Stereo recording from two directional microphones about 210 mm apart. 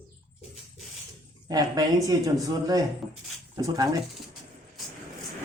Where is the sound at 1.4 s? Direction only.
20° right (ahead or behind).